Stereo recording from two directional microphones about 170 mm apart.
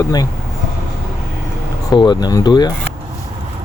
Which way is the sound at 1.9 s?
25° left (ahead or behind).